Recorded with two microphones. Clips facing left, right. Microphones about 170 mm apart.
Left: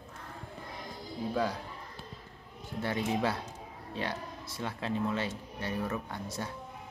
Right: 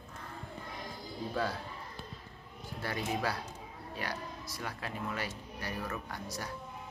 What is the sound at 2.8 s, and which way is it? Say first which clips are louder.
Speech: left 4 dB; 20° left (ahead or behind).